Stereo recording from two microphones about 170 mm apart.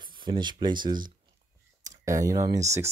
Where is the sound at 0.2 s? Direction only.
25° right (ahead or behind).